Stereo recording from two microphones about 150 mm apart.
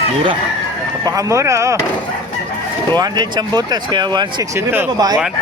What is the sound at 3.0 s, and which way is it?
Speech, 25° right (ahead or behind).